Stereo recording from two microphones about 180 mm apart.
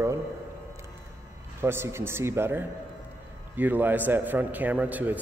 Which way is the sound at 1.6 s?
15° right (ahead or behind).